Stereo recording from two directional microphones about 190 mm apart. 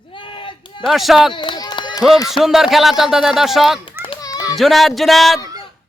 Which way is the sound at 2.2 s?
Centre (ahead or behind).